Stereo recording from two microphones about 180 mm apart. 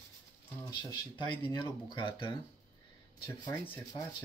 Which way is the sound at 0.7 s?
25° left (ahead or behind).